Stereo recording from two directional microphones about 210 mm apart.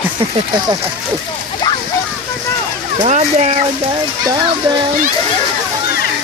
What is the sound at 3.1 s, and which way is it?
Speech, 30° right (ahead or behind).